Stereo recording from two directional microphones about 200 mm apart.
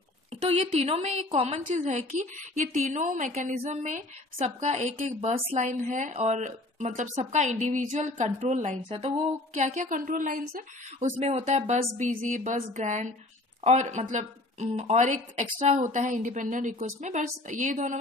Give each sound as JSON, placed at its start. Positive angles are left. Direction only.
{"t": 0.3, "sound": "a woman's voice", "side_deg": -30}